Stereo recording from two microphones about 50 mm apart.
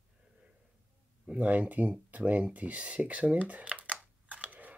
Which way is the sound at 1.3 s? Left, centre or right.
Right.